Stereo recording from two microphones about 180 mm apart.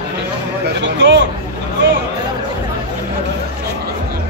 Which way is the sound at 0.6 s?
75° right (ahead or behind).